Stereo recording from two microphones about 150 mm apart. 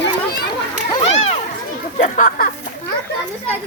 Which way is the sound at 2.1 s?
65° left (ahead or behind).